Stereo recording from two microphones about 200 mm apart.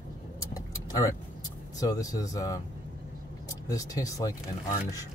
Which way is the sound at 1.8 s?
20° left (ahead or behind).